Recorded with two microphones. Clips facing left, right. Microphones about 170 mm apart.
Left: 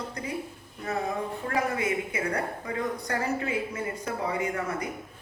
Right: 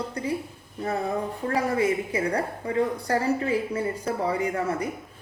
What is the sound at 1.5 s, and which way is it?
A woman's voice, 30° right (ahead or behind).